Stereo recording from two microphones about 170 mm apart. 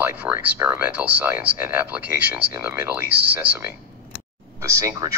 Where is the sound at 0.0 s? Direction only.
10° right (ahead or behind).